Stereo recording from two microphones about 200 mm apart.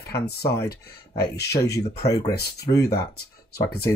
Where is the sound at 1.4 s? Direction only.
55° left (ahead or behind).